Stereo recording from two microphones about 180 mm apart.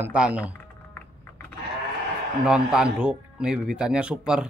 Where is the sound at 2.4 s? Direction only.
5° right (ahead or behind).